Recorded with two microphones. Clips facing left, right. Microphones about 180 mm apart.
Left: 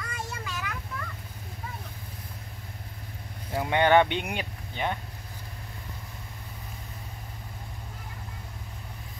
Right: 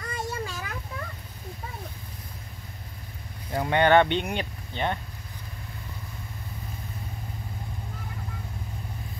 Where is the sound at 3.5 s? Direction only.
10° left (ahead or behind).